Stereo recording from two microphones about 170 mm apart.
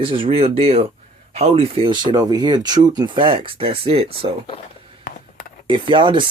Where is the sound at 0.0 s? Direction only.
30° right (ahead or behind).